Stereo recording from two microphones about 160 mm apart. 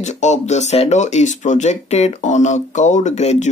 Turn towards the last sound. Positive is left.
turn(degrees=45)  # may be behind; listen again after turning